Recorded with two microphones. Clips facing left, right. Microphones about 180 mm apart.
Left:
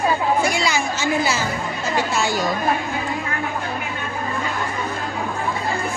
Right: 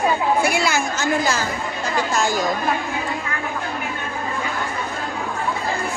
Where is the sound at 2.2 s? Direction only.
45° right (ahead or behind).